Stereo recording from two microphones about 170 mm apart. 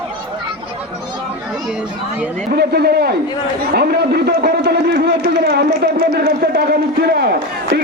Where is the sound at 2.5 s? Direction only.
70° right (ahead or behind).